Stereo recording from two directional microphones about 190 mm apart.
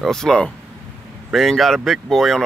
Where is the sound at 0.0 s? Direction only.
Centre (ahead or behind).